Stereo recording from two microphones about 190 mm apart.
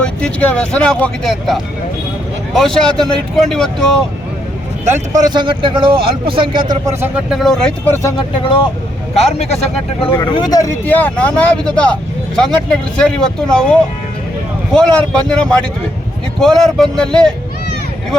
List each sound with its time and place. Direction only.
0.0 s speech: 5° left (ahead or behind)
4.9 s speech: 20° right (ahead or behind)
7.0 s speech: centre (ahead or behind)
9.1 s speech: 35° left (ahead or behind)
10.1 s speech: 20° left (ahead or behind); by 11.9 s 5° left (ahead or behind)
13.0 s speech: 5° left (ahead or behind)